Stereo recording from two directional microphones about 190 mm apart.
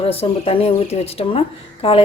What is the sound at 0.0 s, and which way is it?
A woman's voice, 30° left (ahead or behind).